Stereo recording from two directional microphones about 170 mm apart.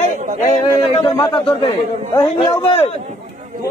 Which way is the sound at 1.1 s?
30° left (ahead or behind).